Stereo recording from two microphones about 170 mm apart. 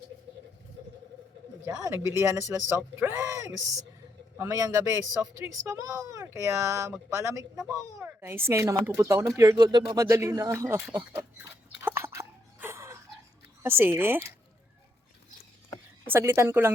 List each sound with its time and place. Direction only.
1.6 s speech: 20° right (ahead or behind)
7.5 s speech: 5° right (ahead or behind)
7.8 s speech: 15° right (ahead or behind)
11.8 s a sound: 15° right (ahead or behind)
13.6 s speech: 15° right (ahead or behind)
16.0 s speech: 15° right (ahead or behind)